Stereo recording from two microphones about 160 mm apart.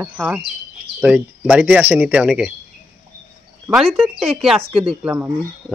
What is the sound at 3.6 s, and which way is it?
Speech, 5° right (ahead or behind).